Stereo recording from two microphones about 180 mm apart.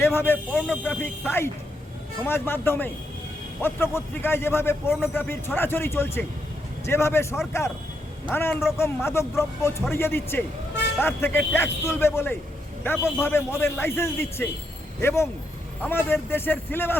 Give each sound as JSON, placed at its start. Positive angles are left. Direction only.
{"t": 0.0, "sound": "a man's voice", "side_deg": 15}